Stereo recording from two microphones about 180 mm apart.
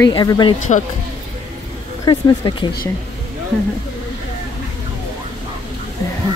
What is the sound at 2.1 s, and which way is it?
Speech, 25° left (ahead or behind).